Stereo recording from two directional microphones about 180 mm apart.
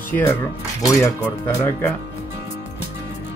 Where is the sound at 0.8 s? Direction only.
15° left (ahead or behind).